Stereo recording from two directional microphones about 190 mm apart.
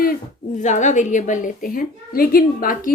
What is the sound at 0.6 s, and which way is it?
A woman's voice, 40° left (ahead or behind).